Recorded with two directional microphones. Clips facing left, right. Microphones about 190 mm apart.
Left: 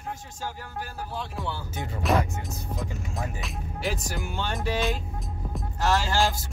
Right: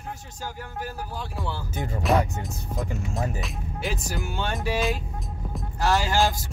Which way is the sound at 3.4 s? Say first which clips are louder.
Even; centre (ahead or behind).